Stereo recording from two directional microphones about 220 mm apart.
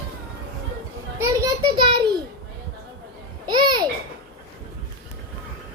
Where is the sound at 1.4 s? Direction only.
20° right (ahead or behind).